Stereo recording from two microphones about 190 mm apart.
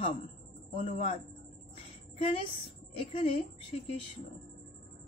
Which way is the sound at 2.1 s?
30° left (ahead or behind).